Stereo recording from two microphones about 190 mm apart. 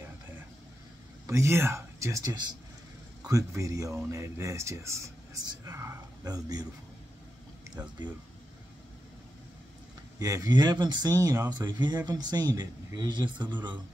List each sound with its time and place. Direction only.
1.2 s speech: 15° right (ahead or behind)
10.1 s speech: 15° right (ahead or behind)